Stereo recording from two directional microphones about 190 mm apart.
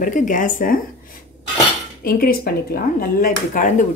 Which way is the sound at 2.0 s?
50° left (ahead or behind).